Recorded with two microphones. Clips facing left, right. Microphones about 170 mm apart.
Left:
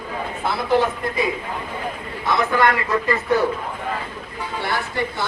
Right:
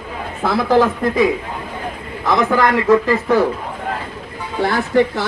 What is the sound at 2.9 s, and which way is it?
Speech, 90° right.